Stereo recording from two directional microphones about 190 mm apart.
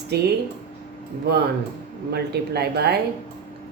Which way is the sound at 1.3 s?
60° right (ahead or behind).